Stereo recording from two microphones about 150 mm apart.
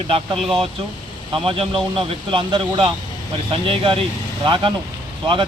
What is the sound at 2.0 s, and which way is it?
Speech, 35° right (ahead or behind).